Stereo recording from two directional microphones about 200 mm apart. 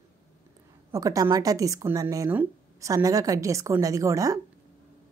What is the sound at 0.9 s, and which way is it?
A woman's voice, 15° right (ahead or behind).